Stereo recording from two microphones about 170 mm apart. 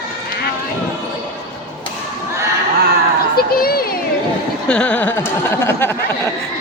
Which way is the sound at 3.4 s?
60° left (ahead or behind).